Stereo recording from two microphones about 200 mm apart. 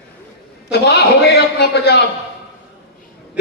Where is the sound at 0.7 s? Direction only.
55° left (ahead or behind).